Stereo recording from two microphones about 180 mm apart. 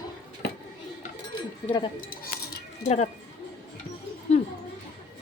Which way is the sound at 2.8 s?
35° left (ahead or behind).